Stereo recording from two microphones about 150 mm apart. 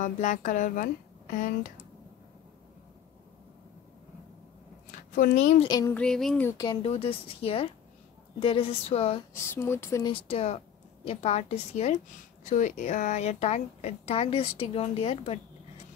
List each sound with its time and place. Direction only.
0.0 s a woman's voice: 55° left (ahead or behind)
5.1 s a woman's voice: 60° left (ahead or behind)
5.7 s speech: 25° left (ahead or behind)
5.9 s a sound: 5° left (ahead or behind)
6.4 s speech: 25° left (ahead or behind)
6.8 s speech: 40° left (ahead or behind)
9.3 s speech: 20° left (ahead or behind)
10.0 s a woman's voice: 40° left (ahead or behind)